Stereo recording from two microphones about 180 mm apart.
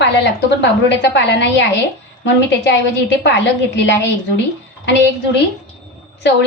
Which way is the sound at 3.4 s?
75° left (ahead or behind).